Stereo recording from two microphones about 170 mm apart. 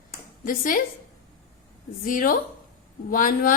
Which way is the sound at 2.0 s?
55° left (ahead or behind).